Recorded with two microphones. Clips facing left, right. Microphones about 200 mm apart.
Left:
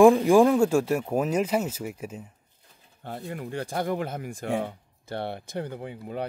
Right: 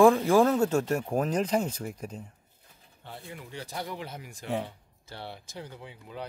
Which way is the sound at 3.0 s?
45° left (ahead or behind).